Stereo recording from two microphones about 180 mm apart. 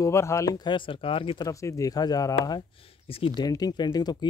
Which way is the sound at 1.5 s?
15° left (ahead or behind).